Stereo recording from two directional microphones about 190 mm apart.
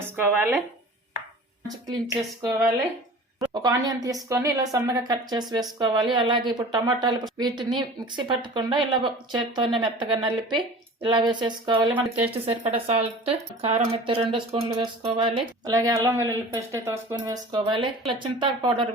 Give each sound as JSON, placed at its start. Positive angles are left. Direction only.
{"t": 0.3, "sound": "speech", "side_deg": -10}
{"t": 2.4, "sound": "a woman's voice", "side_deg": -20}